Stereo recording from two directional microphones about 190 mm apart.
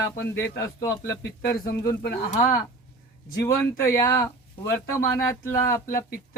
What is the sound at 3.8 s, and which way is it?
Speech, 15° left (ahead or behind).